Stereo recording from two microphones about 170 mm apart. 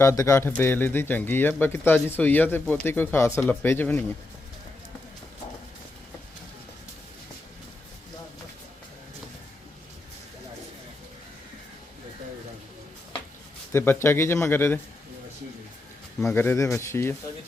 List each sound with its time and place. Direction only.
0.0 s speech: 15° left (ahead or behind)
13.7 s speech: 15° left (ahead or behind)
16.2 s speech: 15° left (ahead or behind)